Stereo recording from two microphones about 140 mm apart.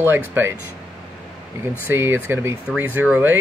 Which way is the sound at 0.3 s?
15° right (ahead or behind).